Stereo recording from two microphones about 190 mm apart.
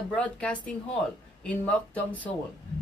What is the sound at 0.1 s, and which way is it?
Speech, 5° left (ahead or behind).